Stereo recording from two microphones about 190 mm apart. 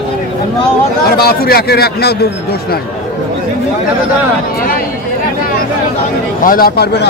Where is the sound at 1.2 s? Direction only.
55° left (ahead or behind).